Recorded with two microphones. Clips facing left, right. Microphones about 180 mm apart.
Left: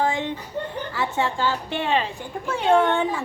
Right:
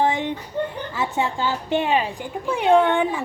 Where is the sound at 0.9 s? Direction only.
15° right (ahead or behind).